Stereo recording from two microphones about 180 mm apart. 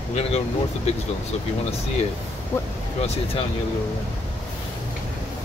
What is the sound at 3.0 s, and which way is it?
Speech, 35° left (ahead or behind).